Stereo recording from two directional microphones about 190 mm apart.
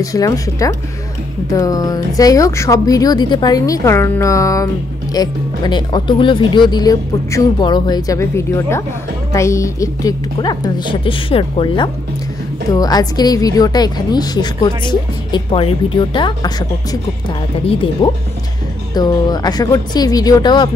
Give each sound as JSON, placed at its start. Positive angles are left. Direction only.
{"t": 0.0, "sound": "a woman's voice", "side_deg": 15}
{"t": 18.0, "sound": "a woman's voice", "side_deg": 25}